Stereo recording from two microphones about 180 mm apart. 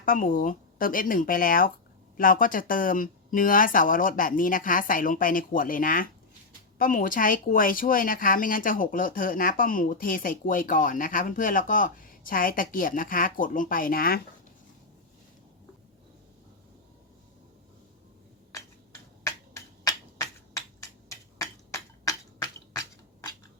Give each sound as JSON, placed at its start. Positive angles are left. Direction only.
{"t": 0.0, "sound": "speech", "side_deg": 50}
{"t": 19.2, "sound": "finger snapping", "side_deg": 15}
{"t": 21.3, "sound": "a sound", "side_deg": 15}